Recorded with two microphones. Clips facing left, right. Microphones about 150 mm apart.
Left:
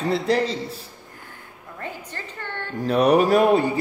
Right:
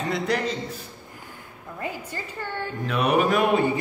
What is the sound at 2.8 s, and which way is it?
Speech, 40° left (ahead or behind).